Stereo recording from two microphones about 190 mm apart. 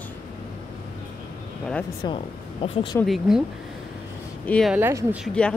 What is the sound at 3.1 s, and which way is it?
Speech, centre (ahead or behind).